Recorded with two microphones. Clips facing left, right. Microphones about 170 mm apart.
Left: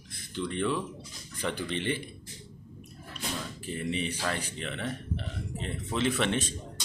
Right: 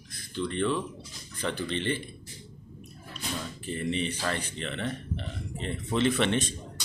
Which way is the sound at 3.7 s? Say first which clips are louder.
Right 2 dB; 5° left (ahead or behind).